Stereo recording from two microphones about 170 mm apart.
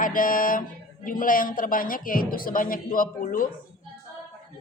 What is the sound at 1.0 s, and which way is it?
A woman's voice, 55° left (ahead or behind).